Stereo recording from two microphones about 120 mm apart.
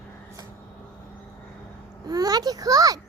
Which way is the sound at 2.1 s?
30° right (ahead or behind).